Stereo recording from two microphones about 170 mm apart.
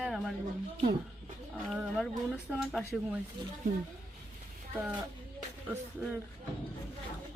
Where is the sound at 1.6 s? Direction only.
Centre (ahead or behind).